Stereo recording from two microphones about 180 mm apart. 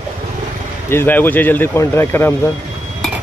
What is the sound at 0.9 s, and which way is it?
Speech, 10° left (ahead or behind).